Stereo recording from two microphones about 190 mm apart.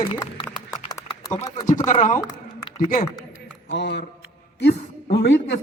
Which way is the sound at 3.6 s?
65° left (ahead or behind).